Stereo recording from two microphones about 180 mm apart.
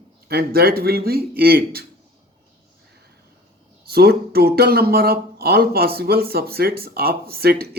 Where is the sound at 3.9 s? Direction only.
60° right (ahead or behind).